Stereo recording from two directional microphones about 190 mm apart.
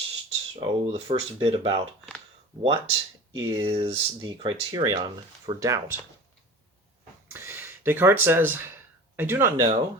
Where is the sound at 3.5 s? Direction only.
25° right (ahead or behind).